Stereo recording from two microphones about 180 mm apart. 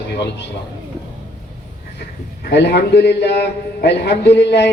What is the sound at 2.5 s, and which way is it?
A man's voice, 70° left (ahead or behind).